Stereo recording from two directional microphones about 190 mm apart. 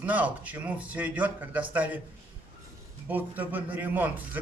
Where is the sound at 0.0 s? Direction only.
10° right (ahead or behind).